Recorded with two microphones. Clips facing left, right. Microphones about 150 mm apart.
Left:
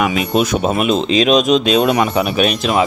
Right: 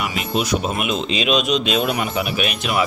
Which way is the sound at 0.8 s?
40° left (ahead or behind).